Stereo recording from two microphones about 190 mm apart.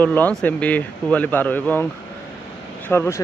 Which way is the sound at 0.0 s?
10° left (ahead or behind).